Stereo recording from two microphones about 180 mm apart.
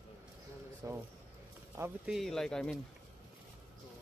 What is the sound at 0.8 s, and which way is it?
Speech, 20° right (ahead or behind).